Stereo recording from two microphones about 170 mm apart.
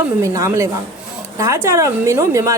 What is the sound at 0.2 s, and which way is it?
A woman's voice, 15° right (ahead or behind).